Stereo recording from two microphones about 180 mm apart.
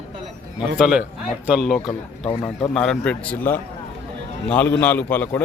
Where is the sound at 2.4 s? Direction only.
20° left (ahead or behind).